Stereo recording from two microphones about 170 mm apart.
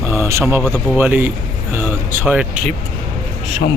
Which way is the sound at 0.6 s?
Centre (ahead or behind).